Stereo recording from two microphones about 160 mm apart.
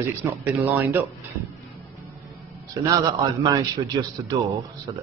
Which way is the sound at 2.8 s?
25° right (ahead or behind).